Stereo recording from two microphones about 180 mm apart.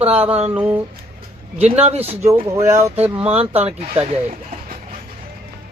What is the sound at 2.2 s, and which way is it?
Speech, 15° right (ahead or behind).